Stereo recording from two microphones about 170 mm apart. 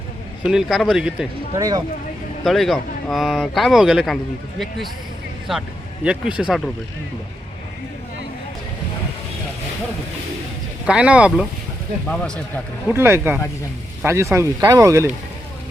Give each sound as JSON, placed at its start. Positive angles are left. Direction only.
{"t": 0.4, "sound": "speech", "side_deg": 0}
{"t": 1.5, "sound": "speech", "side_deg": -20}
{"t": 2.4, "sound": "speech", "side_deg": 0}
{"t": 5.5, "sound": "speech", "side_deg": -5}
{"t": 10.8, "sound": "speech", "side_deg": -5}
{"t": 12.0, "sound": "speech", "side_deg": 5}
{"t": 12.9, "sound": "speech", "side_deg": -15}